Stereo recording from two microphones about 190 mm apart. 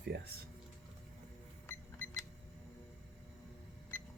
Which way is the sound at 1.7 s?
10° left (ahead or behind).